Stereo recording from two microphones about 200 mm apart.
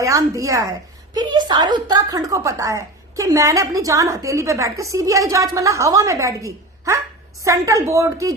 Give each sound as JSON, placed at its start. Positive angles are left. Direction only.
{"t": 0.0, "sound": "a woman's voice", "side_deg": -15}